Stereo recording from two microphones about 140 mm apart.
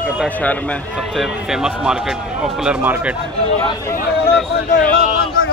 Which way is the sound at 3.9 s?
85° left.